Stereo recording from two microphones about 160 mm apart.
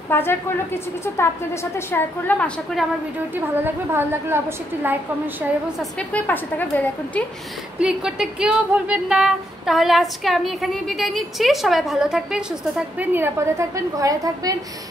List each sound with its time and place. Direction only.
0.1 s a woman's voice: 15° left (ahead or behind)
3.3 s a woman's voice: 15° right (ahead or behind)
5.8 s a woman's voice: 5° left (ahead or behind)
7.8 s a sound: 5° right (ahead or behind); by 14.6 s 20° right (ahead or behind)